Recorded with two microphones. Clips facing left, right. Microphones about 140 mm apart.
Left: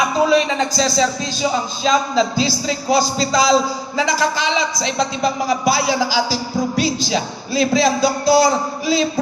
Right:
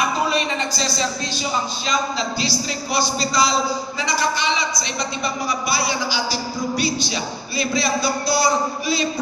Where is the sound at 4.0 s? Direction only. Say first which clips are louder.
Left 6 dB; 90° left.